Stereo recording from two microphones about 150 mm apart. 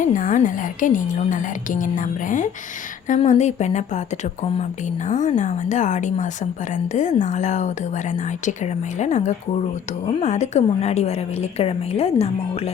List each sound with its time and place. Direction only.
0.0 s a woman's voice: 60° left (ahead or behind)
5.0 s a woman's voice: 55° left (ahead or behind)